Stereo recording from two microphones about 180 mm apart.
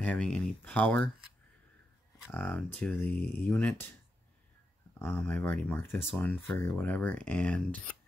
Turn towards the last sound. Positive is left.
turn(degrees=5)  # may be behind; listen again after turning